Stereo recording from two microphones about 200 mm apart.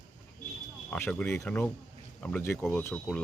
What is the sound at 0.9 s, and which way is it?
Speech, 10° left (ahead or behind).